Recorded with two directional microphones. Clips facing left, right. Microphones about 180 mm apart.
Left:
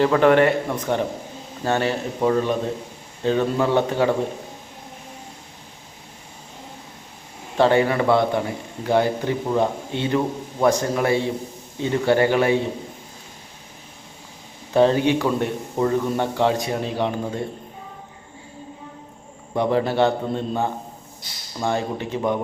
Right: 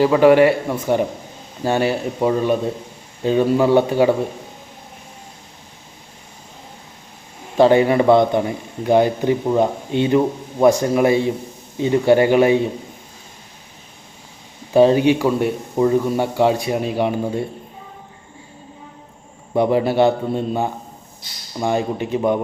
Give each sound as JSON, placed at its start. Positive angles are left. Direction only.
{"t": 0.0, "sound": "a man's voice", "side_deg": -10}
{"t": 7.5, "sound": "a man's voice", "side_deg": -15}
{"t": 14.7, "sound": "a man's voice", "side_deg": -15}
{"t": 19.5, "sound": "a man's voice", "side_deg": -15}